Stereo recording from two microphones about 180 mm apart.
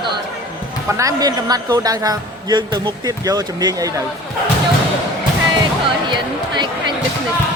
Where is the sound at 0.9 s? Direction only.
20° right (ahead or behind).